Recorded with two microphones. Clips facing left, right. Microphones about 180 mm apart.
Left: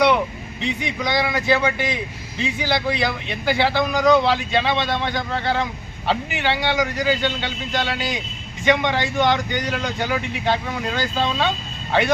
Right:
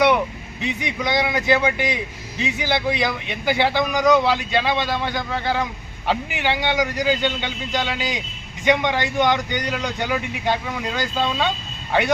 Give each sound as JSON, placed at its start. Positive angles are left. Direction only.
{"t": 0.6, "sound": "a man's voice", "side_deg": -15}